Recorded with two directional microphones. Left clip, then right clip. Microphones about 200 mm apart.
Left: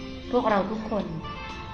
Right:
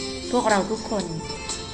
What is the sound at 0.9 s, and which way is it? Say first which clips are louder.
Speech: right 1 dB; 10° right (ahead or behind).